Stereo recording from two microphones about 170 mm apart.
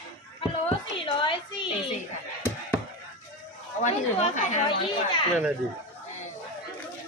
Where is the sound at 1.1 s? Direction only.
30° left (ahead or behind).